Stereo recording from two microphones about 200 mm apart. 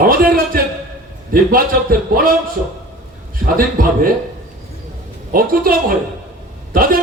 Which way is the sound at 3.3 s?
45° right (ahead or behind).